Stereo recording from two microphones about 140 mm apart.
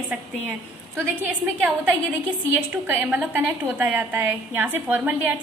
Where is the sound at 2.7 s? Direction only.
15° right (ahead or behind).